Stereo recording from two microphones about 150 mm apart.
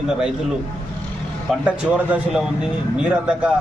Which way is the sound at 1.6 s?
10° right (ahead or behind).